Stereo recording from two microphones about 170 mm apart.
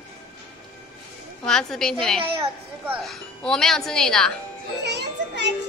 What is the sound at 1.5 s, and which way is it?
A woman's voice, 5° left (ahead or behind).